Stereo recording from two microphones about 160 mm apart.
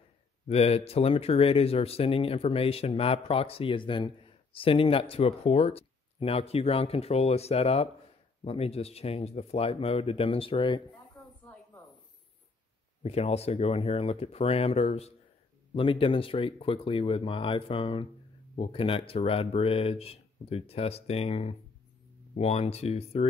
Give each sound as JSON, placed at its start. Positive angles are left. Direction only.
{"t": 0.5, "sound": "speech", "side_deg": 40}
{"t": 11.2, "sound": "snake", "side_deg": 10}
{"t": 13.0, "sound": "speech", "side_deg": 40}